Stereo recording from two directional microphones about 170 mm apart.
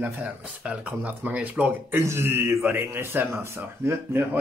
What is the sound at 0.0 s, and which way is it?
Speech, 5° right (ahead or behind).